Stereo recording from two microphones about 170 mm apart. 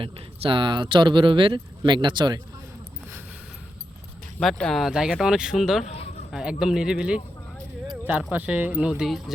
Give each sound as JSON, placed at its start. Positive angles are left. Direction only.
{"t": 0.0, "sound": "speech", "side_deg": -30}
{"t": 4.4, "sound": "speech", "side_deg": 5}
{"t": 5.8, "sound": "speech", "side_deg": 40}
{"t": 6.3, "sound": "speech", "side_deg": -5}